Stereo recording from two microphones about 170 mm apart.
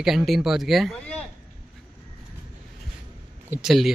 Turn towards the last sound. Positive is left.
turn(degrees=0)  # may be behind; listen again after turning